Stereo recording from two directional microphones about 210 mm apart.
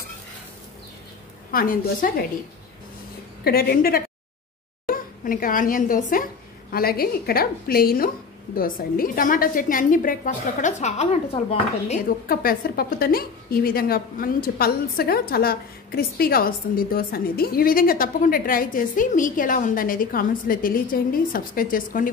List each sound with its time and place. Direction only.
1.5 s a woman's voice: 40° left (ahead or behind)
3.4 s a woman's voice: 50° left (ahead or behind); by 12.0 s 30° left (ahead or behind)
12.3 s a woman's voice: 45° left (ahead or behind)